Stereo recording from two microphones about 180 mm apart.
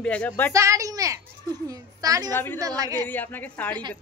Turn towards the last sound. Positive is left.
turn(degrees=10)  # may be behind; listen again after turning